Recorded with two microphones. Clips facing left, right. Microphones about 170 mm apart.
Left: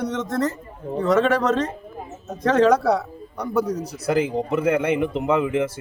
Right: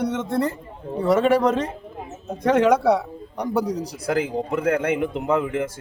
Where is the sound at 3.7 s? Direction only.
70° right (ahead or behind).